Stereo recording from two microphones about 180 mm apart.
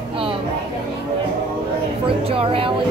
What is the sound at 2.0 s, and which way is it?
Speech, 30° right (ahead or behind).